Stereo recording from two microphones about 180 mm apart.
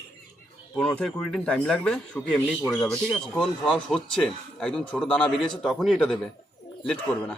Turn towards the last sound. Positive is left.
turn(degrees=5)  # may be behind; listen again after turning